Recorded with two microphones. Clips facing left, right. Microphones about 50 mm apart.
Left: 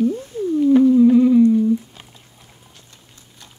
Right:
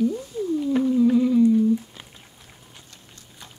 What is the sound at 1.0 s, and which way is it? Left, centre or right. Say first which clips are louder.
Music: left 6 dB; centre.